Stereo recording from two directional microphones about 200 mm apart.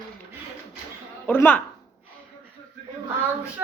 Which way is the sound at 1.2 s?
10° left (ahead or behind).